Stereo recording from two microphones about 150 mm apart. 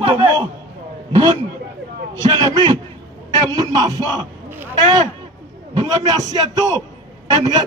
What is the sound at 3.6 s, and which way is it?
Speech, 25° right (ahead or behind).